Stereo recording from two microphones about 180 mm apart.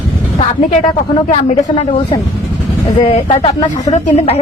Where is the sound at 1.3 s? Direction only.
35° left (ahead or behind).